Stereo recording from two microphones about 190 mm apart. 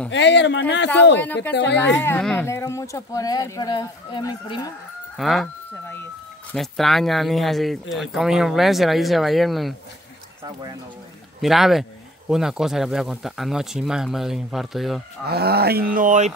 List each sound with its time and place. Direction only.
0.1 s speech: 70° left (ahead or behind)
1.2 s speech: 10° left (ahead or behind)
5.1 s speech: centre (ahead or behind)
6.5 s speech: centre (ahead or behind)
10.4 s speech: 20° right (ahead or behind)
11.4 s speech: centre (ahead or behind)
15.2 s speech: 55° right (ahead or behind); by 16.3 s 40° right (ahead or behind)